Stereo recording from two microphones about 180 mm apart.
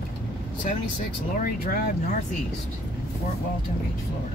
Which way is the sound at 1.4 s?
50° left (ahead or behind).